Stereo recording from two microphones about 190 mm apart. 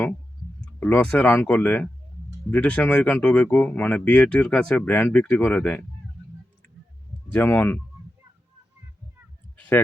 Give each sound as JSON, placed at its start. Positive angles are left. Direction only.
{"t": 0.6, "sound": "speech", "side_deg": 10}
{"t": 7.3, "sound": "speech", "side_deg": 10}
{"t": 9.6, "sound": "a sound", "side_deg": 10}